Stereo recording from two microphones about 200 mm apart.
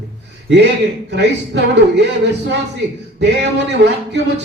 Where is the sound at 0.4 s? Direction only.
60° right (ahead or behind).